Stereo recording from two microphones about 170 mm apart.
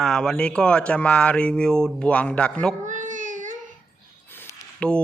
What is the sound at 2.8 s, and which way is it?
Child singing, 45° right (ahead or behind).